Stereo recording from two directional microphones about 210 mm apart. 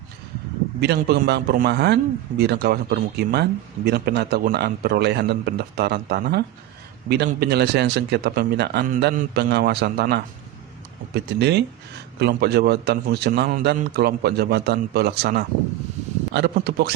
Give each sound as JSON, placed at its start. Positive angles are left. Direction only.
{"t": 0.8, "sound": "a man's voice", "side_deg": -50}